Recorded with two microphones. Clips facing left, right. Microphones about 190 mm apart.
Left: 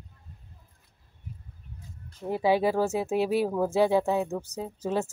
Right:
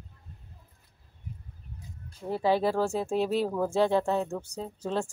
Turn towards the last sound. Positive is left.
turn(degrees=5)  # may be behind; listen again after turning